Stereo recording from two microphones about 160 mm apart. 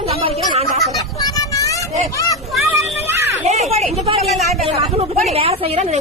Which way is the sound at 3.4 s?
45° right (ahead or behind).